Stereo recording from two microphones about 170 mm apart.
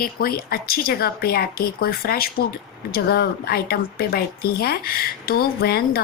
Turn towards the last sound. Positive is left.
turn(degrees=65)  # may be behind; listen again after turning